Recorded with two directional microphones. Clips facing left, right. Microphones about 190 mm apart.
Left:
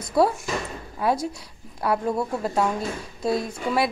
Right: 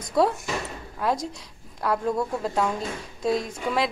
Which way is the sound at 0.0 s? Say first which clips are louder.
Left 2 dB; centre (ahead or behind).